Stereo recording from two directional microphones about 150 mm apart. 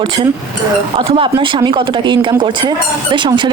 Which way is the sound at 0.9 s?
35° right (ahead or behind).